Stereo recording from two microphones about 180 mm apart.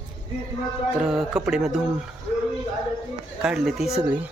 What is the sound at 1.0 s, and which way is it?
Speech, 5° right (ahead or behind).